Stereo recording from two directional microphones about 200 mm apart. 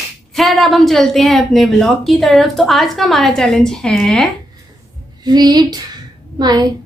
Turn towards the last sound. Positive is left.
turn(degrees=-20)  # may be behind; listen again after turning